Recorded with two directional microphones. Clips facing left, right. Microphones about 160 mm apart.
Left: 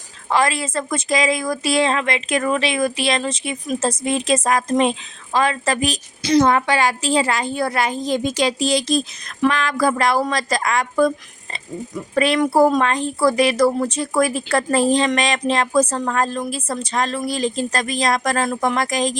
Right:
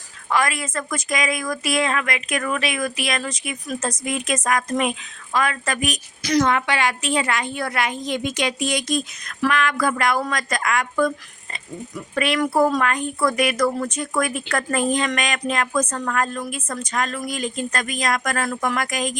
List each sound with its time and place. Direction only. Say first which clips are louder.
0.3 s a woman's voice: left 3 dB; 30° left (ahead or behind)
12.1 s speech: left 5 dB; 35° left (ahead or behind)
12.4 s a woman's voice: left 3 dB; 20° left (ahead or behind)